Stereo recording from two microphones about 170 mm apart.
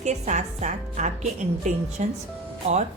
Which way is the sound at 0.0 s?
45° right (ahead or behind).